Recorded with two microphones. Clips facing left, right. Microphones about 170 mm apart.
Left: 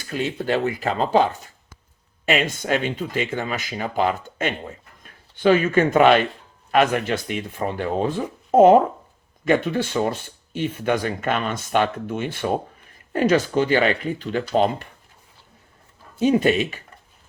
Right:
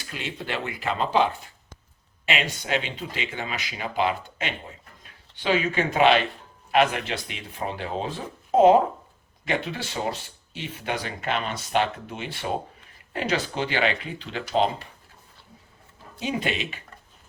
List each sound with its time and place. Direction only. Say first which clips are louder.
0.0 s speech: left 9 dB; 45° left (ahead or behind)
16.2 s speech: left 10 dB; 45° left (ahead or behind)